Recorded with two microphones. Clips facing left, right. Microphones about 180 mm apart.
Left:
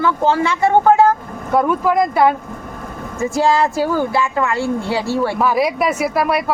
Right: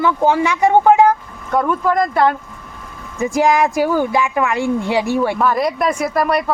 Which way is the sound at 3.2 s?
15° right (ahead or behind).